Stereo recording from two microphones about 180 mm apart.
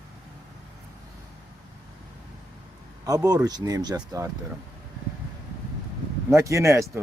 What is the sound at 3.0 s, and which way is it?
Speech, 20° right (ahead or behind).